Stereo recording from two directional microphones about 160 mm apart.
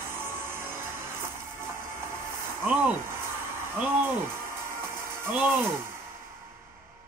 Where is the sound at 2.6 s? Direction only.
15° right (ahead or behind).